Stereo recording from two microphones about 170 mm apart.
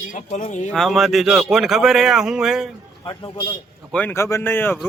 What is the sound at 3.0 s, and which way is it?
Speech, 25° left (ahead or behind).